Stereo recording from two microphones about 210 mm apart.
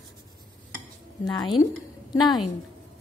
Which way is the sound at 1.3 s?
20° left (ahead or behind).